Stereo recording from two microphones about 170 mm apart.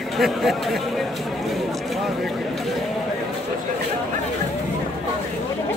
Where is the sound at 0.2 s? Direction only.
Centre (ahead or behind).